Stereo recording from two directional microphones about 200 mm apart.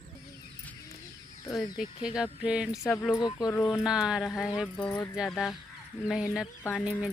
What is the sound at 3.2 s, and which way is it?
Speech, 20° left (ahead or behind).